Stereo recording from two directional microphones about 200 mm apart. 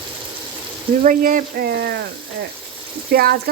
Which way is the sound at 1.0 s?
45° right (ahead or behind).